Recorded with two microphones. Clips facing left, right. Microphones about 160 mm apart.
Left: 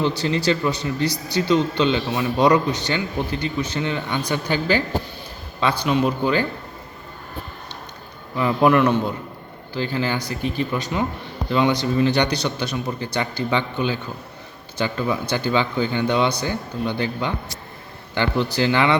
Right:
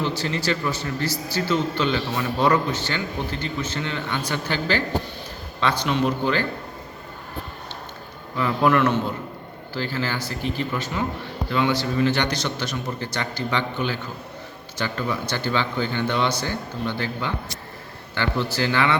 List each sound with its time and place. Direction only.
0.3 s a man's voice: 25° left (ahead or behind)
8.4 s a man's voice: 20° left (ahead or behind)